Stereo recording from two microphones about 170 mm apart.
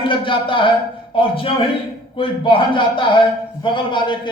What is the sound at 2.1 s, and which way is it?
A man's voice, 30° left (ahead or behind).